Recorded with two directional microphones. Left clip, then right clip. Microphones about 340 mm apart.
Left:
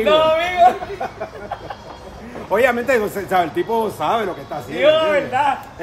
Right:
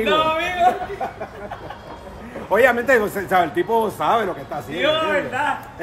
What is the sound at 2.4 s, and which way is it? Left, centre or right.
A man's voice, centre.